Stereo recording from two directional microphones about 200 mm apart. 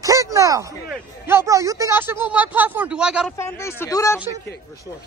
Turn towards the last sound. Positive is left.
turn(degrees=15)  # may be behind; listen again after turning